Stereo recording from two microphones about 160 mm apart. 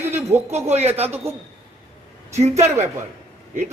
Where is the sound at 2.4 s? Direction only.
45° right (ahead or behind).